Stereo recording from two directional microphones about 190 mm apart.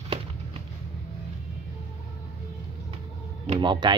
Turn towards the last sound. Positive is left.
turn(degrees=-25)  # may be behind; listen again after turning